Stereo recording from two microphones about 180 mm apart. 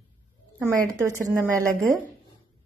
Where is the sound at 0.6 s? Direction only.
15° right (ahead or behind).